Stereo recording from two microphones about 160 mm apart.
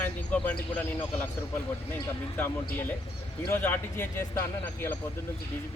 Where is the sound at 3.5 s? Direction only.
15° left (ahead or behind).